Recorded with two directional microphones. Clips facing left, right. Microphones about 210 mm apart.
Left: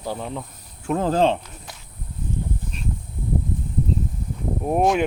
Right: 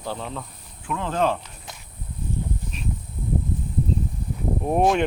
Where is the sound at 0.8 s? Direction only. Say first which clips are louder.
Left 5 dB; 40° left (ahead or behind).